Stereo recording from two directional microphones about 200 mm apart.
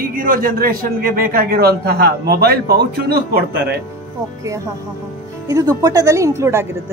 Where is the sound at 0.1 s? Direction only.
45° right (ahead or behind).